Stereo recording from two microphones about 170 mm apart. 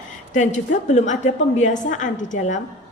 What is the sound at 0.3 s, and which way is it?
A woman's voice, 45° left (ahead or behind).